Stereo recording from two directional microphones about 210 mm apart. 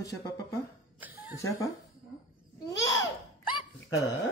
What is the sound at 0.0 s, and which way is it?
Speech, 15° left (ahead or behind).